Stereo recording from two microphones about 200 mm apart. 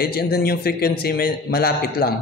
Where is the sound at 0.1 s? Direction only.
50° left (ahead or behind).